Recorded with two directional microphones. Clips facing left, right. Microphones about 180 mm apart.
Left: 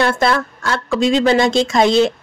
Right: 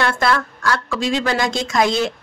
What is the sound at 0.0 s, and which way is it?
A woman's voice, 25° left (ahead or behind).